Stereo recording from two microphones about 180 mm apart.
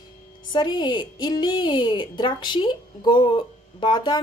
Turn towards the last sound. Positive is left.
turn(degrees=25)  # may be behind; listen again after turning